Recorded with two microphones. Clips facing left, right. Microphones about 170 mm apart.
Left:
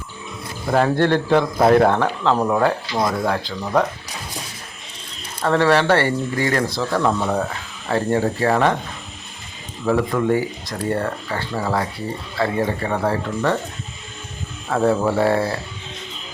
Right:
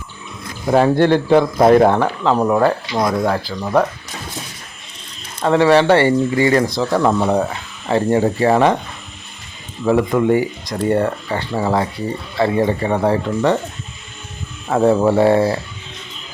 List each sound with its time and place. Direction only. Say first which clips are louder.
0.7 s speech: right 4 dB; 15° right (ahead or behind)
5.4 s speech: right 4 dB; 15° right (ahead or behind)
9.8 s speech: right 4 dB; 15° right (ahead or behind)
14.7 s speech: right 4 dB; 15° right (ahead or behind)